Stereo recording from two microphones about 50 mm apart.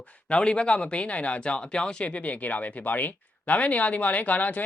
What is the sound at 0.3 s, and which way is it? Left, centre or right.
Speech, left.